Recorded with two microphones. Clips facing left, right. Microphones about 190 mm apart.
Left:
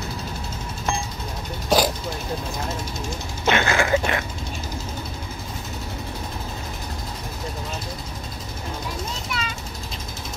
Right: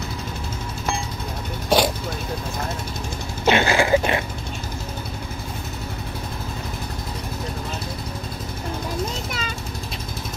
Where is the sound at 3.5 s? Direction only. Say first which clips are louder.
Right 3 dB; 30° right (ahead or behind).